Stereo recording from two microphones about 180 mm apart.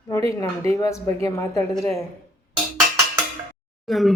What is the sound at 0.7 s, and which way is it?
Speech, 15° left (ahead or behind).